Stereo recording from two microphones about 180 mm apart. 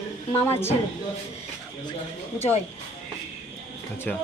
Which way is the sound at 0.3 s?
15° left (ahead or behind).